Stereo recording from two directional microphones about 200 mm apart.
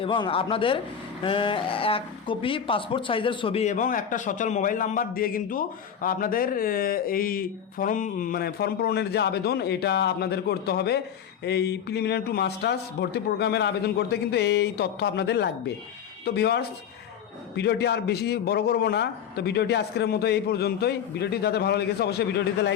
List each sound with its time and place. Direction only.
0.0 s a man's voice: 25° left (ahead or behind); by 22.7 s 55° left (ahead or behind)